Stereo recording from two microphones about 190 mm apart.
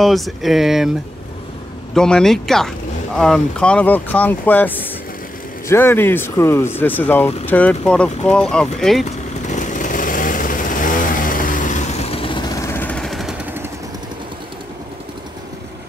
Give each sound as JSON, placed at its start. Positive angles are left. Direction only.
{"t": 0.0, "sound": "speech", "side_deg": 0}
{"t": 2.0, "sound": "speech", "side_deg": 5}
{"t": 9.5, "sound": "vehicle", "side_deg": 40}